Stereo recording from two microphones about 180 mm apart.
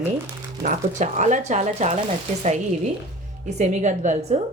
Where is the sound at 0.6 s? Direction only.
45° right (ahead or behind).